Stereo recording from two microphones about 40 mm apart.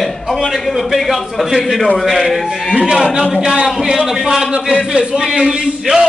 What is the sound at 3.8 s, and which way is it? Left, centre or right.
Speech, centre.